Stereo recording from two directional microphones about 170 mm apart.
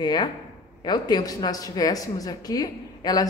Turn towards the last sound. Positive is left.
turn(degrees=20)  # may be behind; listen again after turning